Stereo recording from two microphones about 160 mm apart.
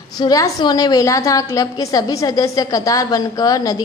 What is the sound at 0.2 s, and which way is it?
A woman's voice, 25° left (ahead or behind).